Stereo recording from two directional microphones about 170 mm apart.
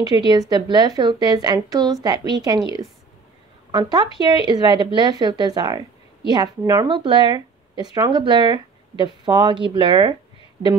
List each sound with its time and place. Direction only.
0.0 s a woman's voice: 25° right (ahead or behind)